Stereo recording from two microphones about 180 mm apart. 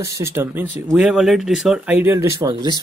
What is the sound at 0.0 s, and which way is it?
Speech, 15° right (ahead or behind).